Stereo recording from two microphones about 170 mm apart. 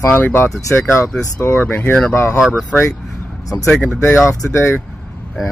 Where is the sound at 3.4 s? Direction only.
20° left (ahead or behind).